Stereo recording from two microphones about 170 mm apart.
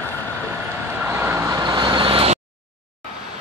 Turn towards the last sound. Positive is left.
turn(degrees=-35)  # may be behind; listen again after turning